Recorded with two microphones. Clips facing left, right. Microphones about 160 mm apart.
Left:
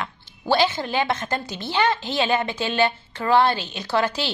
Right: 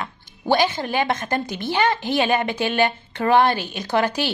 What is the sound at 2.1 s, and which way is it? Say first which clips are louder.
A woman's voice: right 2 dB; 50° right (ahead or behind).